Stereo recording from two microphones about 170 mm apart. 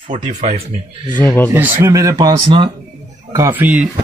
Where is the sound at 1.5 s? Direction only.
10° right (ahead or behind); by 2.7 s 30° right (ahead or behind).